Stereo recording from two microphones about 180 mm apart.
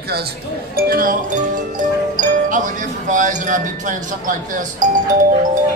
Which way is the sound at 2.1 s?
45° right (ahead or behind).